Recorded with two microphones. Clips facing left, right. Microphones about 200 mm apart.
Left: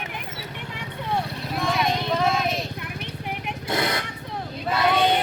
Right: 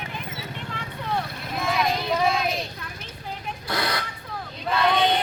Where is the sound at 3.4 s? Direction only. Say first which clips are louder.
Left 2 dB; 25° left (ahead or behind).